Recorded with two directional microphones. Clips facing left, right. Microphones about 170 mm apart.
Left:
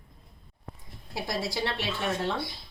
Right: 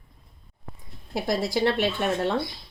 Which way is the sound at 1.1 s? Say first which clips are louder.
Right 7 dB; 60° right (ahead or behind).